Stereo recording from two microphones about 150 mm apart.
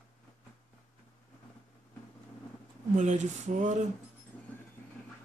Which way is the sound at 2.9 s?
50° right (ahead or behind).